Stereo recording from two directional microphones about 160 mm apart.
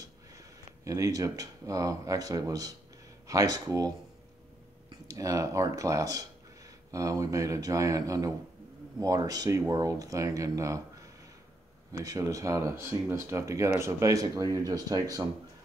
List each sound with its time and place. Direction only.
0.8 s speech: 20° right (ahead or behind)